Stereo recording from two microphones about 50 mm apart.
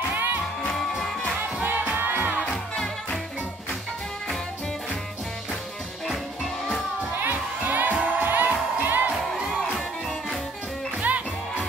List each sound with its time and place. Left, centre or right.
0.1 s music: right
0.7 s music: centre
1.6 s music: right
7.0 s music: right
11.0 s music: right